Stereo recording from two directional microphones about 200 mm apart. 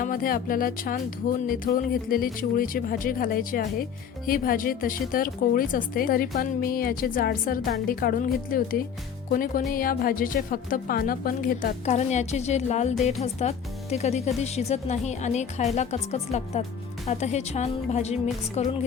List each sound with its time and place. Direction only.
0.0 s a woman's voice: 45° left (ahead or behind)